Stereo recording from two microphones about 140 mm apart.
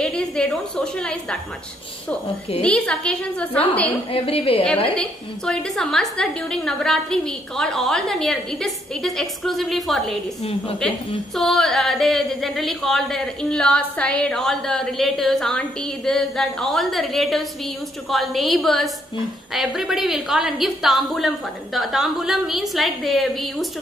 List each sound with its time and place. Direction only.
0.0 s a woman's voice: 5° left (ahead or behind)
2.6 s a woman's voice: 5° left (ahead or behind)
4.1 s a woman's voice: 40° left (ahead or behind)
4.9 s a woman's voice: 5° left (ahead or behind)
11.3 s a woman's voice: centre (ahead or behind)